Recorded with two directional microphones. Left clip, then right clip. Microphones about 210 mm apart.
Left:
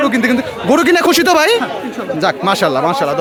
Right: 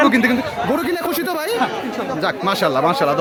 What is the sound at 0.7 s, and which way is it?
Speech, 40° left (ahead or behind).